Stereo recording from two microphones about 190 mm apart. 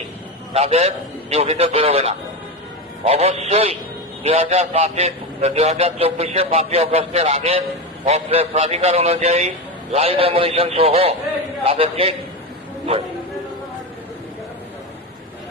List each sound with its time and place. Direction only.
0.5 s a man's voice: 35° right (ahead or behind)